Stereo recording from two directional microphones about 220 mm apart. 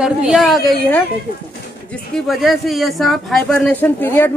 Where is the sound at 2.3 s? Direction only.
Centre (ahead or behind).